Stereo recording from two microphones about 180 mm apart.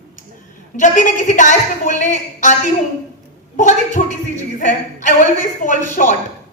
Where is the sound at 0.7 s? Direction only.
45° left (ahead or behind).